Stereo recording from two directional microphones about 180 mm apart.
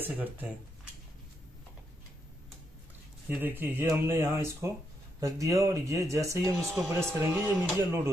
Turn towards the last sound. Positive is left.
turn(degrees=-15)  # may be behind; listen again after turning